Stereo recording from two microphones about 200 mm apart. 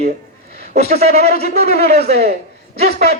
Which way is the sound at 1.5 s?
55° right (ahead or behind).